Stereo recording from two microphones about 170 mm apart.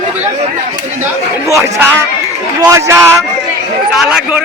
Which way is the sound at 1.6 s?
15° right (ahead or behind).